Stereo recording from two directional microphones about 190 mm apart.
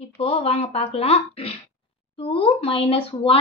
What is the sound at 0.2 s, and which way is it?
A woman's voice, 30° left (ahead or behind).